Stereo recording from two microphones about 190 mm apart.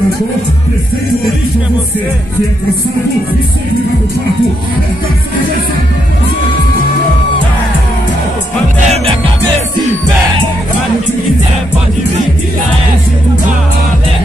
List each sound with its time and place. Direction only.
8.7 s music: 35° right (ahead or behind)